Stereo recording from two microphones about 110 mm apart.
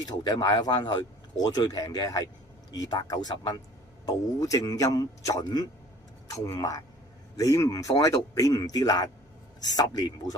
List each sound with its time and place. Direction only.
0.0 s speech: 40° left (ahead or behind)